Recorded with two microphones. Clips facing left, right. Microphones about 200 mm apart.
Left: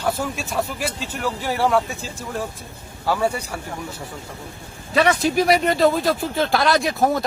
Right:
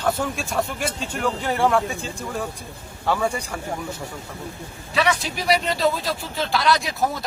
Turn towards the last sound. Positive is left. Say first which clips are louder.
# left 6 dB
turn(degrees=55)  # may be behind; listen again after turning